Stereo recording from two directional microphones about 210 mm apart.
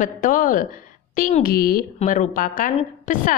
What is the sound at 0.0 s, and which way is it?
A woman's voice, 40° left (ahead or behind).